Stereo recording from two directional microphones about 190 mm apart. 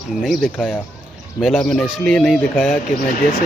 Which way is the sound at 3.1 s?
45° left (ahead or behind).